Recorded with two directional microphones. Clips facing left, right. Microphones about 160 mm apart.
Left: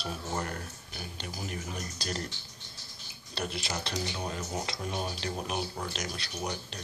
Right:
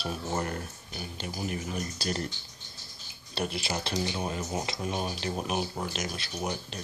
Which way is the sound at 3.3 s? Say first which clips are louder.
Right 3 dB; 10° right (ahead or behind).